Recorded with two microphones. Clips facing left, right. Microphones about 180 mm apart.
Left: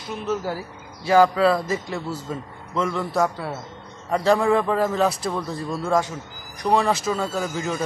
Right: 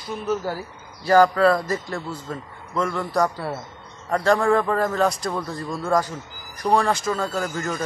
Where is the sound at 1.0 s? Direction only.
Centre (ahead or behind).